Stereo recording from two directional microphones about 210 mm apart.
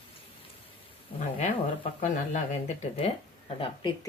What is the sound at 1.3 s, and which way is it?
Speech, 35° left (ahead or behind).